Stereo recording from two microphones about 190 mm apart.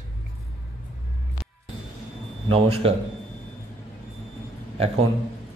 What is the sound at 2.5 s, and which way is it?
Speech, 30° right (ahead or behind).